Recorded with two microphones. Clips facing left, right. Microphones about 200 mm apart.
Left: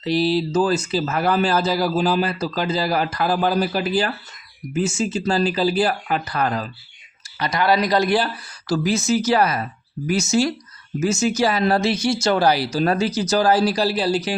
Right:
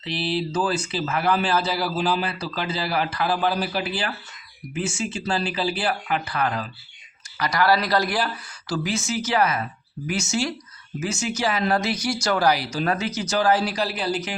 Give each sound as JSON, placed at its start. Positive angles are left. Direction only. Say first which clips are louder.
{"t": 0.0, "sound": "speech", "louder": "left 7 dB", "side_deg": 40}
{"t": 7.3, "sound": "speech", "louder": "left 2 dB", "side_deg": 25}
{"t": 8.6, "sound": "speech", "louder": "left 6 dB", "side_deg": 40}